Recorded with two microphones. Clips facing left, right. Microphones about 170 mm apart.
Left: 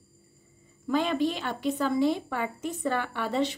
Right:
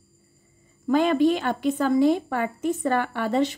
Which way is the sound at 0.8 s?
50° right (ahead or behind).